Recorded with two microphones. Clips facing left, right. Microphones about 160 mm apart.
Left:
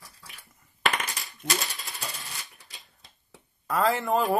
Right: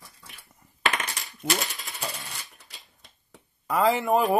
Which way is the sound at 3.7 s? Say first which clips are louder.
Right 3 dB; 15° right (ahead or behind).